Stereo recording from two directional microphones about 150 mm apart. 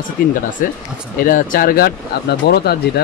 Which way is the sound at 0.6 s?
65° left (ahead or behind).